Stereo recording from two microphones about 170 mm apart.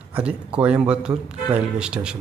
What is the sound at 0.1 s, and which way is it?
Speech, 5° right (ahead or behind).